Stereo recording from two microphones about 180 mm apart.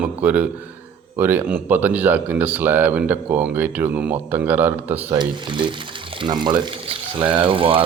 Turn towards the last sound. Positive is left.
turn(degrees=-30)  # may be behind; listen again after turning